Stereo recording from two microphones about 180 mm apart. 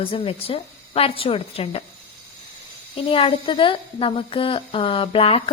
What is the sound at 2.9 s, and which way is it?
A woman's voice, 30° left (ahead or behind).